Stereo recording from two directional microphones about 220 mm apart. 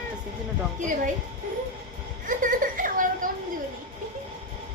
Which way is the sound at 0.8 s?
35° right (ahead or behind).